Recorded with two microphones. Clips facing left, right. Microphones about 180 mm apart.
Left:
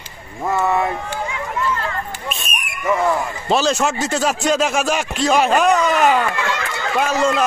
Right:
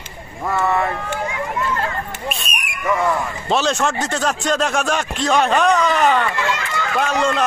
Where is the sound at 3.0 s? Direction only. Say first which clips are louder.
Left 1 dB; 5° left (ahead or behind).